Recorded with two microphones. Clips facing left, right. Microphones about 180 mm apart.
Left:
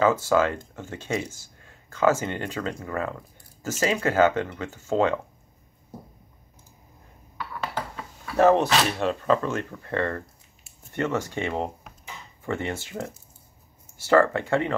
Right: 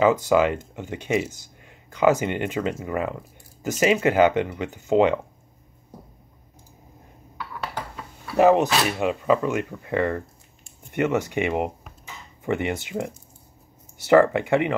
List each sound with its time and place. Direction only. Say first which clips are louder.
0.0 s speech: right 3 dB; 15° right (ahead or behind)
7.3 s dishes: left 1 dB; 5° right (ahead or behind)
8.4 s speech: right 2 dB; 15° right (ahead or behind)